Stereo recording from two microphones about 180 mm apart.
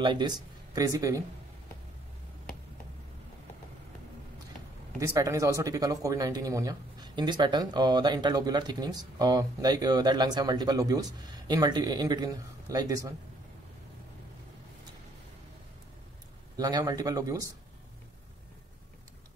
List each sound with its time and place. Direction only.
0.0 s speech: 25° right (ahead or behind)
5.0 s speech: 15° right (ahead or behind)
16.5 s speech: 20° right (ahead or behind)